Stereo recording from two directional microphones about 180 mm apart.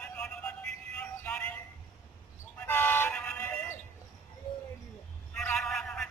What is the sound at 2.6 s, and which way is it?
Vehicle, 10° left (ahead or behind).